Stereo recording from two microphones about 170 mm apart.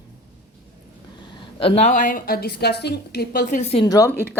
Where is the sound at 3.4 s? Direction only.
40° left (ahead or behind).